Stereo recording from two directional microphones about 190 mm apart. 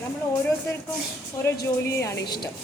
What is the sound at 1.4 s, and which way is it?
A woman's voice, 15° left (ahead or behind).